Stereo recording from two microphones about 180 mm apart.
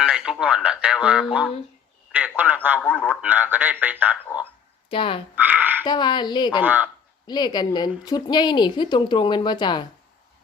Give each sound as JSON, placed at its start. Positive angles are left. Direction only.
{"t": 0.0, "sound": "a man's voice", "side_deg": -5}
{"t": 2.8, "sound": "a man's voice", "side_deg": 5}
{"t": 3.1, "sound": "a man's voice", "side_deg": -10}
{"t": 4.9, "sound": "a woman's voice", "side_deg": 30}
{"t": 5.3, "sound": "a sound", "side_deg": -10}
{"t": 5.8, "sound": "a woman's voice", "side_deg": 25}
{"t": 6.6, "sound": "a man's voice", "side_deg": -10}
{"t": 7.3, "sound": "a woman's voice", "side_deg": 25}